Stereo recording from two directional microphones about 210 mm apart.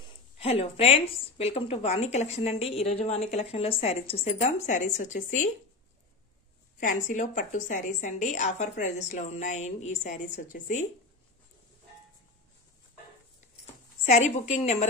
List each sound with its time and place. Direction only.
0.0 s a woman's voice: 30° left (ahead or behind)
6.8 s a woman's voice: 35° left (ahead or behind)
14.0 s a woman's voice: 35° left (ahead or behind)